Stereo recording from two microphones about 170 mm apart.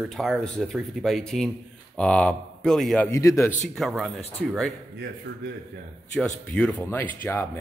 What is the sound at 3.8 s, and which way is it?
Speech, centre (ahead or behind).